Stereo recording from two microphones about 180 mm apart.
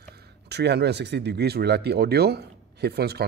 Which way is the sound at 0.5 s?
65° right (ahead or behind).